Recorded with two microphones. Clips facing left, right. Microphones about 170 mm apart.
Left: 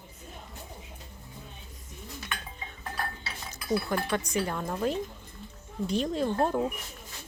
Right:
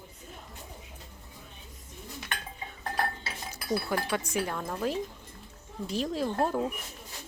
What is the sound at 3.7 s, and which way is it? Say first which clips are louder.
Speech: left 1 dB; 5° right (ahead or behind).